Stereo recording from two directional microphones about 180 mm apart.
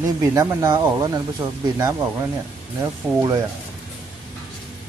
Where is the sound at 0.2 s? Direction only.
15° right (ahead or behind).